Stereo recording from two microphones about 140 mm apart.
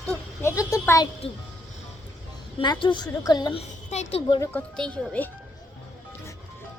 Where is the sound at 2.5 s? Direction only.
35° left (ahead or behind).